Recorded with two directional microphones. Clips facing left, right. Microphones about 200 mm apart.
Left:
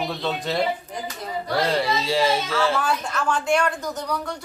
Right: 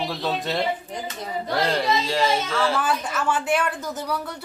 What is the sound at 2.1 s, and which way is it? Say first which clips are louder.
A man's voice: left 1 dB; 5° left (ahead or behind).